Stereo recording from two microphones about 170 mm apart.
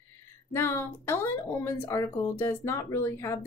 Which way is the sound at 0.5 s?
15° left (ahead or behind).